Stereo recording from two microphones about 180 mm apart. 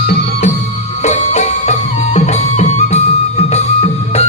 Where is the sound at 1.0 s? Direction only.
40° left (ahead or behind).